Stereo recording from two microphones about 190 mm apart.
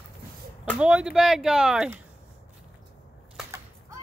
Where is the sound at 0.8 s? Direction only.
5° right (ahead or behind).